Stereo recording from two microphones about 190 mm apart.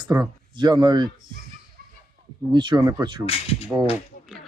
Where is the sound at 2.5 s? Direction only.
25° right (ahead or behind).